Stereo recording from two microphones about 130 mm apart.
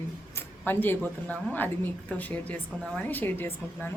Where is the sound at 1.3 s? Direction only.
15° left (ahead or behind).